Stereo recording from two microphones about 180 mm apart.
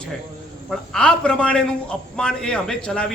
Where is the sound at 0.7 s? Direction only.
5° left (ahead or behind).